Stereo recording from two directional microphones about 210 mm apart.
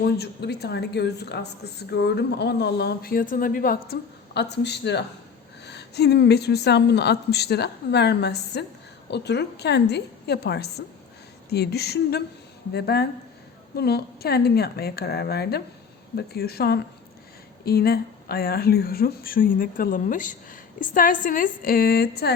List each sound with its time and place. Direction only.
0.0 s speech: 50° left (ahead or behind)
4.4 s speech: 55° left (ahead or behind)